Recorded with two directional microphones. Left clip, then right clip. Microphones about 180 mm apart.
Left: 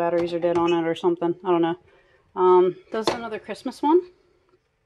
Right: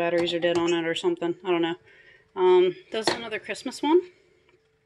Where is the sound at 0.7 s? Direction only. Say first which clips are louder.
Left 3 dB; 15° left (ahead or behind).